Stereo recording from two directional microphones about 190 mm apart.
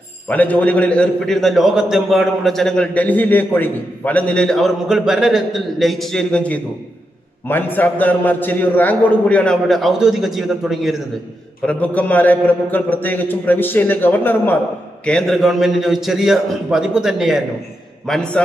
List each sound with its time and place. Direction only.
0.3 s a man's voice: 10° left (ahead or behind)